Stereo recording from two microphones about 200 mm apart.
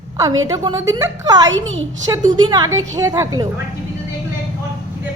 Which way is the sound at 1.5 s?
75° right (ahead or behind).